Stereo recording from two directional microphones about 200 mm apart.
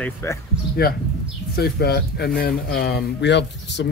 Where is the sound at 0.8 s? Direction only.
50° left (ahead or behind).